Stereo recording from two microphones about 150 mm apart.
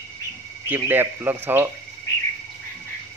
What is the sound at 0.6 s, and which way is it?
Speech, 15° right (ahead or behind).